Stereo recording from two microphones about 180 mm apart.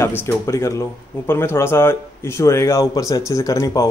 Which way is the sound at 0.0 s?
10° left (ahead or behind).